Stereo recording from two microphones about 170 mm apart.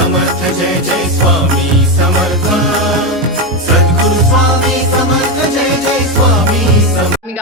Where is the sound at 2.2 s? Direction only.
Centre (ahead or behind).